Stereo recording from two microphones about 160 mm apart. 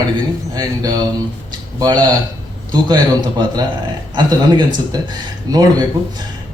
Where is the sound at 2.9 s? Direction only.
25° right (ahead or behind).